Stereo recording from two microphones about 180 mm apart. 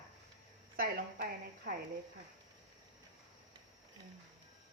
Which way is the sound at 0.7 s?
55° right (ahead or behind).